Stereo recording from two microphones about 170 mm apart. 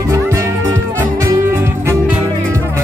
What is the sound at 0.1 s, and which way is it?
Music, 15° right (ahead or behind).